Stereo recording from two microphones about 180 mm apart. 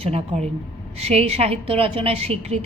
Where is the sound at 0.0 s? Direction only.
35° right (ahead or behind).